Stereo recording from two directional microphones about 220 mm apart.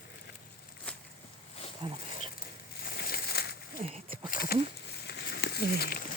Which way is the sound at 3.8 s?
25° right (ahead or behind).